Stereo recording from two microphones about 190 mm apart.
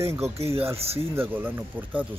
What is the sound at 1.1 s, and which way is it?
Speech, 10° right (ahead or behind).